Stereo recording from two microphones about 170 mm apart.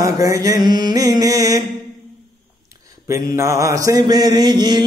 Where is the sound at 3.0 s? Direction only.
15° right (ahead or behind).